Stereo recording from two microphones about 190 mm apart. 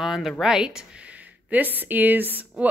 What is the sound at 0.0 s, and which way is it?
Speech, centre (ahead or behind).